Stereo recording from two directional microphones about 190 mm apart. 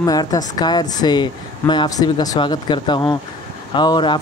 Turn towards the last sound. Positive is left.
turn(degrees=25)  # may be behind; listen again after turning